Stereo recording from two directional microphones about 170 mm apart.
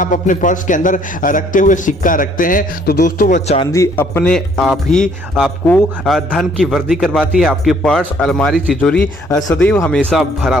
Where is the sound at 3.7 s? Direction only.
15° left (ahead or behind).